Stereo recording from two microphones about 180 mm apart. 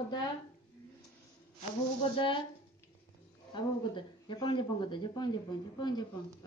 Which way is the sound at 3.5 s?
25° left (ahead or behind).